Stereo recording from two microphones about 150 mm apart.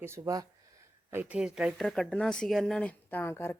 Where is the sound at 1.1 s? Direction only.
10° right (ahead or behind).